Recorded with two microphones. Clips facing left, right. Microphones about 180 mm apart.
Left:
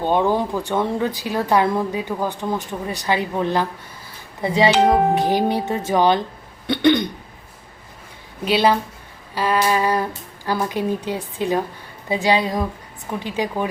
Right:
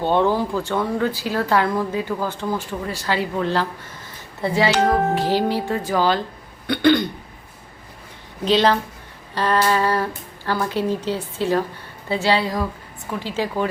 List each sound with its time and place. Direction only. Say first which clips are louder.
0.0 s speech: even; 15° left (ahead or behind)
4.4 s music: left 2 dB; 20° left (ahead or behind)
8.4 s speech: even; 10° left (ahead or behind)